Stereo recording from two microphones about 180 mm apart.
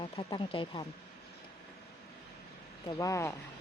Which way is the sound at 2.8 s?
20° left (ahead or behind).